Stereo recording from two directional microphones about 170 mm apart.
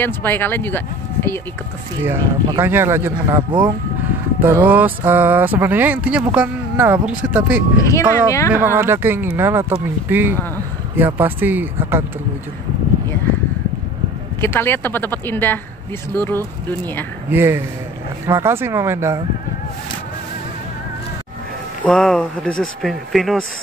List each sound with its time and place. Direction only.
0.0 s speech: 10° left (ahead or behind)
2.0 s speech: 15° right (ahead or behind)
7.8 s speech: 15° left (ahead or behind)
8.5 s speech: 15° right (ahead or behind)
14.4 s speech: 15° left (ahead or behind)
17.3 s speech: 15° right (ahead or behind)
21.8 s speech: 5° left (ahead or behind)